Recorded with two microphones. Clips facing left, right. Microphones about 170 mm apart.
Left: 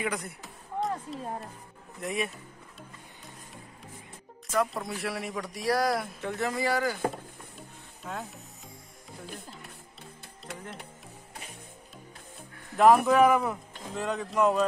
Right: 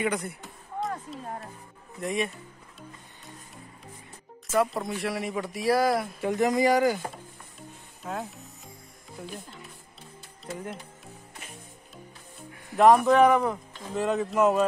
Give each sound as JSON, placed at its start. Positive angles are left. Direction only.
{"t": 0.0, "sound": "speech", "side_deg": 0}
{"t": 4.5, "sound": "speech", "side_deg": 0}
{"t": 6.2, "sound": "a man's voice", "side_deg": -15}
{"t": 7.5, "sound": "music", "side_deg": 0}
{"t": 12.7, "sound": "speech", "side_deg": 0}